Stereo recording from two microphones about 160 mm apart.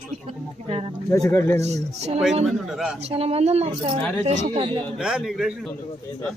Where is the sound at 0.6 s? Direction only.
35° right (ahead or behind).